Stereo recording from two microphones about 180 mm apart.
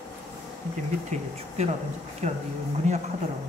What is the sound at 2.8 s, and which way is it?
Speech, 40° right (ahead or behind).